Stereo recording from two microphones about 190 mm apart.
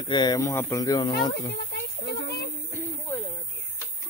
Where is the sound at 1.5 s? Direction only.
60° left (ahead or behind).